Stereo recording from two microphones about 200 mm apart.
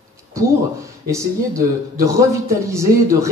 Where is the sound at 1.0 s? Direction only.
15° right (ahead or behind).